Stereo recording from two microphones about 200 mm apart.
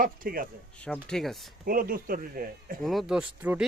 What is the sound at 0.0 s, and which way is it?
Speech, 45° right (ahead or behind).